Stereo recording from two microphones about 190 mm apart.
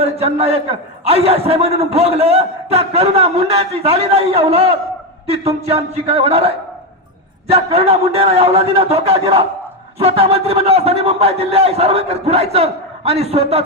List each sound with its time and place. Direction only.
0.0 s a man's voice: 35° right (ahead or behind)
7.5 s a man's voice: 30° right (ahead or behind)